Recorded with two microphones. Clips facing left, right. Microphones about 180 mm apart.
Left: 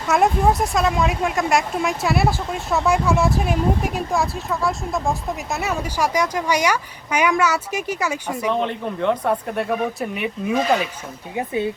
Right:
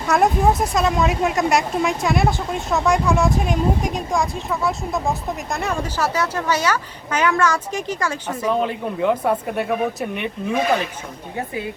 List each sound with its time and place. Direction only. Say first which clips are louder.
0.1 s speech: even; centre (ahead or behind)
8.4 s speech: right 2 dB; 5° right (ahead or behind)
11.3 s speech: left 4 dB; 25° left (ahead or behind)